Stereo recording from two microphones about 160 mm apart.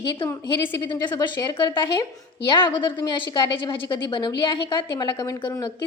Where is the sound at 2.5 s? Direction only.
30° left (ahead or behind).